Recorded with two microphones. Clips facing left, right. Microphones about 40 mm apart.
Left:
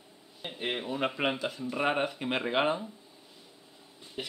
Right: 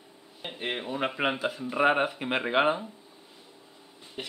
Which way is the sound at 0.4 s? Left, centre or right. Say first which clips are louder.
Right 1 dB; centre.